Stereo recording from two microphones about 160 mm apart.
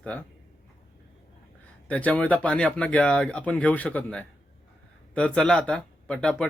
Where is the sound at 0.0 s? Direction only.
10° left (ahead or behind).